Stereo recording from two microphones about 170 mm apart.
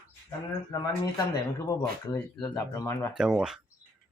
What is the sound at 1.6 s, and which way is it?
Speech, 20° left (ahead or behind).